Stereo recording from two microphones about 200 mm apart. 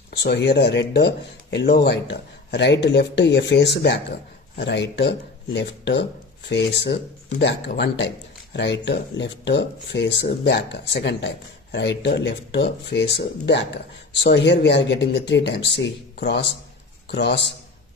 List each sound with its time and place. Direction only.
0.1 s speech: 55° left (ahead or behind)